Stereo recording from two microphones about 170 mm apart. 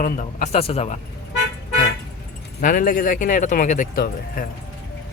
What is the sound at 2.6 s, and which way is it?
Speech, 55° left (ahead or behind).